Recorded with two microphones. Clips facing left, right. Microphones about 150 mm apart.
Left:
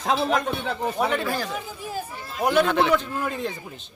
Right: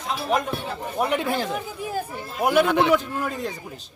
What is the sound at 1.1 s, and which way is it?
Speech, 20° right (ahead or behind).